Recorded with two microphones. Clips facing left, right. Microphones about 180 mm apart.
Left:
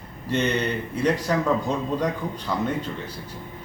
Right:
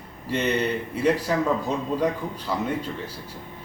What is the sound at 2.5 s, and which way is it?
Speech, 5° right (ahead or behind).